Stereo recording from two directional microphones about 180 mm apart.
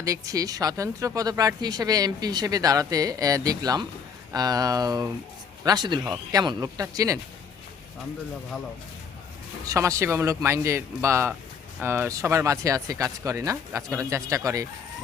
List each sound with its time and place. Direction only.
0.0 s speech: 20° right (ahead or behind)
9.6 s speech: 15° right (ahead or behind)